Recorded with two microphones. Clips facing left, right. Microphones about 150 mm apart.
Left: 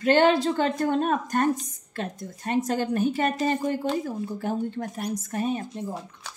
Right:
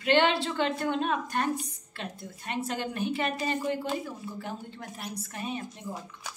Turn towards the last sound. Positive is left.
turn(degrees=45)  # may be behind; listen again after turning